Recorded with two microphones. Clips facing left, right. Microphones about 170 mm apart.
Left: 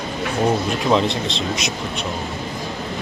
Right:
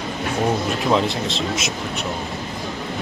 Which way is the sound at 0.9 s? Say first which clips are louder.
Left 2 dB; 5° right (ahead or behind).